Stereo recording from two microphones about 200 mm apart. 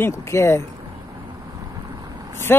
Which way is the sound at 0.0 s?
15° left (ahead or behind).